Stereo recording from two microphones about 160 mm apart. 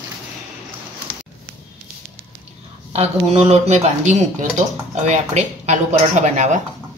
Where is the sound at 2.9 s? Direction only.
40° right (ahead or behind).